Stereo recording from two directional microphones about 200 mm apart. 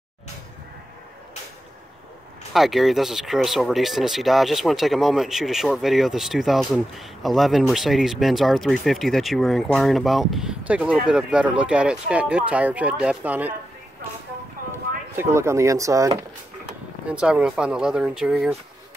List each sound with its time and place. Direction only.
2.5 s speech: centre (ahead or behind)
15.1 s speech: 15° right (ahead or behind)
17.1 s speech: 5° right (ahead or behind)